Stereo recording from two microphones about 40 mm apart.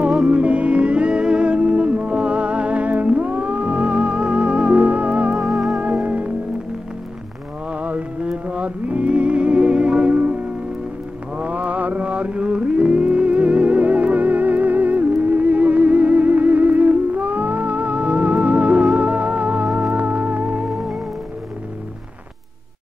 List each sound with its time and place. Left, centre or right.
0.3 s music: right
5.4 s music: centre
6.0 s music: right
7.7 s music: right